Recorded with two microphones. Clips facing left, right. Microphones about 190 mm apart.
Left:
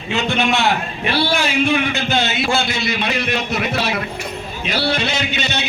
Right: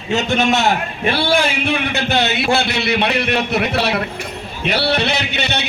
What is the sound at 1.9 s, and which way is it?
A man's voice, 65° right (ahead or behind).